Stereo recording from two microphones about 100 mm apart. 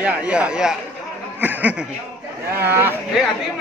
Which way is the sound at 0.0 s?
10° right (ahead or behind).